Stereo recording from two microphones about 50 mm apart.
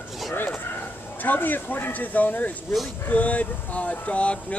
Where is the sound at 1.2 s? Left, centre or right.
Left.